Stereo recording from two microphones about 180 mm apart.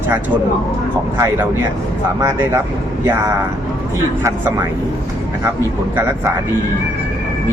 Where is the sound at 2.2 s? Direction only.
15° right (ahead or behind).